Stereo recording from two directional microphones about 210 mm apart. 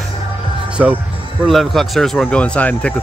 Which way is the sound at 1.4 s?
Centre (ahead or behind).